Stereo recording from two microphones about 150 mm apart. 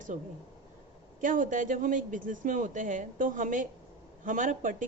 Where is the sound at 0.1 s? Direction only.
55° right (ahead or behind).